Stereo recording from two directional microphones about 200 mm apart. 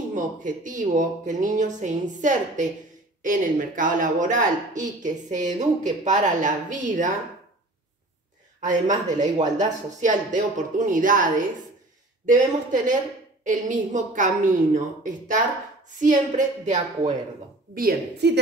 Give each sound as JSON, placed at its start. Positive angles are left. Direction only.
{"t": 0.1, "sound": "speech", "side_deg": -40}
{"t": 8.5, "sound": "speech", "side_deg": -40}
{"t": 17.7, "sound": "a woman's voice", "side_deg": -50}